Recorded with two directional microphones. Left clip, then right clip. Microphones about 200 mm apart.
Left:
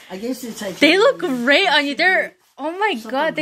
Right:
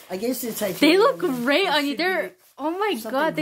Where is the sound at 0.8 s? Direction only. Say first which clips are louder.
Left 4 dB; 5° right (ahead or behind).